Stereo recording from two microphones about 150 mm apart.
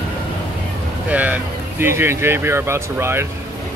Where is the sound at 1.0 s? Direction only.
10° right (ahead or behind).